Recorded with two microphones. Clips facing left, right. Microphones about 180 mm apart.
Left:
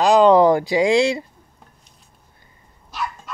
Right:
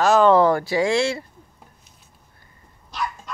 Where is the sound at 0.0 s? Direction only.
15° left (ahead or behind).